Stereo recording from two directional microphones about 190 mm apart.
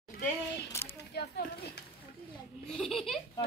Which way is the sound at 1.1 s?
60° left (ahead or behind).